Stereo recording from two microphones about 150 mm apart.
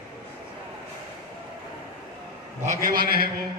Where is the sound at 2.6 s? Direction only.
65° right (ahead or behind); by 3.3 s 85° right.